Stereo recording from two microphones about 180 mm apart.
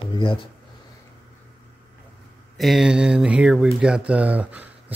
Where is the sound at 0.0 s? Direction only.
30° left (ahead or behind).